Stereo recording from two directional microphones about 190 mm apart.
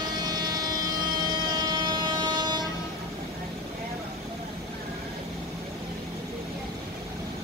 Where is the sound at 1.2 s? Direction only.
20° right (ahead or behind).